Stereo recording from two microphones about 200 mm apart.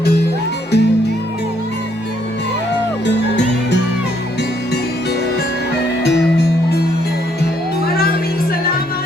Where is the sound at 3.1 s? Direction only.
60° left (ahead or behind).